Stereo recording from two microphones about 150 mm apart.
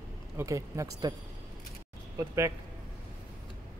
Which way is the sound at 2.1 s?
20° right (ahead or behind).